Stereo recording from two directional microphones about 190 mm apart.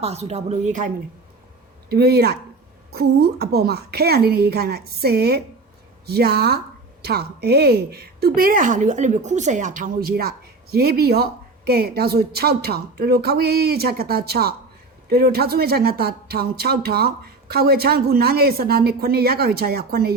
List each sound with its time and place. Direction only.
0.0 s a woman's voice: 35° right (ahead or behind)
1.9 s a woman's voice: 55° right (ahead or behind)